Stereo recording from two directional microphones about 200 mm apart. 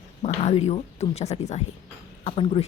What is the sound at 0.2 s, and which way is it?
Speech, 30° left (ahead or behind).